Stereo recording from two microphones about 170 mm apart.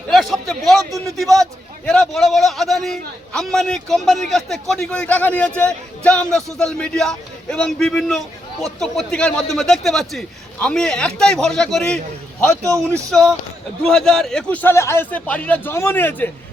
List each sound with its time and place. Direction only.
0.1 s a sound: centre (ahead or behind)
0.8 s a man's voice: 20° right (ahead or behind)
1.1 s a man's voice: centre (ahead or behind)
12.6 s a man's voice: 15° right (ahead or behind)
13.1 s a man's voice: 5° left (ahead or behind)